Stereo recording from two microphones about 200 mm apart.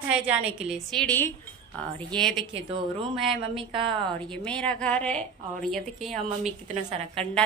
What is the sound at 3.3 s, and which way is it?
Speech, 25° right (ahead or behind).